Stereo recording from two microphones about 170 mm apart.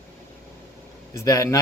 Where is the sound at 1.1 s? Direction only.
20° left (ahead or behind).